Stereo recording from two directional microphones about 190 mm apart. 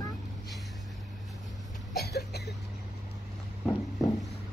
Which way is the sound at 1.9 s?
60° left (ahead or behind).